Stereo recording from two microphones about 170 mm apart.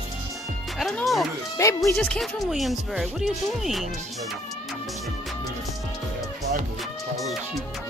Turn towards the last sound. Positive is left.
turn(degrees=0)  # may be behind; listen again after turning